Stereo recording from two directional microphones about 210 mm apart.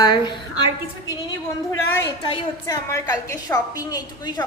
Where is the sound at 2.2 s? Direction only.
20° left (ahead or behind).